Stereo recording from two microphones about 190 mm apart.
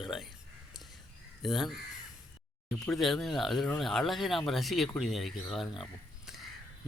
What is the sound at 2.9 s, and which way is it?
Speech, centre (ahead or behind).